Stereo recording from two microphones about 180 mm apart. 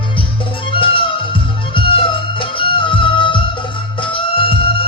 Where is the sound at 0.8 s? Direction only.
30° left (ahead or behind).